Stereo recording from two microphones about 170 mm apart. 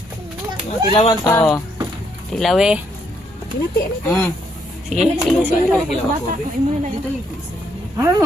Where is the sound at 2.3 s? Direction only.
Centre (ahead or behind).